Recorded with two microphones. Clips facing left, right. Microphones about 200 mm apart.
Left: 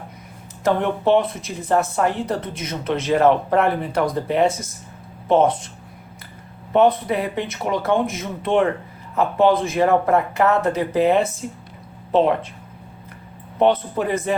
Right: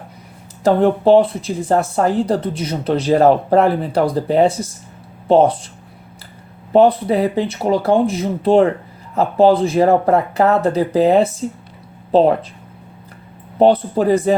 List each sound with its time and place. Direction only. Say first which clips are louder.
0.6 s speech: right 6 dB; 35° right (ahead or behind)
6.7 s speech: right 4 dB; 35° right (ahead or behind)
13.6 s speech: right 5 dB; 35° right (ahead or behind)